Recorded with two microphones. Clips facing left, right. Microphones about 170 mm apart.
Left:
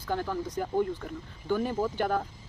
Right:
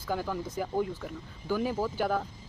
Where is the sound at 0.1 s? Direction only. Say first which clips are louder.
Left 1 dB; 10° right (ahead or behind).